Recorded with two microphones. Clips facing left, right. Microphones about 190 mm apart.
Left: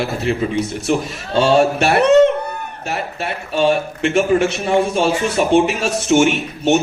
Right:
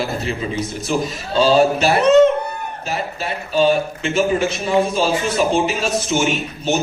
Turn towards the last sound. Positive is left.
turn(degrees=65)  # may be behind; listen again after turning